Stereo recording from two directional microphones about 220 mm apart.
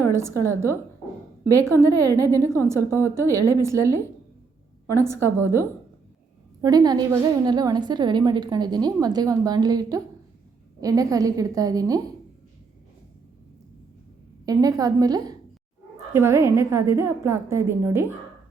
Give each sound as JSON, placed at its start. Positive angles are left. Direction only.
{"t": 0.1, "sound": "a woman's voice", "side_deg": -10}
{"t": 1.5, "sound": "a woman's voice", "side_deg": 10}
{"t": 2.5, "sound": "a woman's voice", "side_deg": -10}
{"t": 5.4, "sound": "a woman's voice", "side_deg": -10}
{"t": 14.4, "sound": "a woman's voice", "side_deg": -15}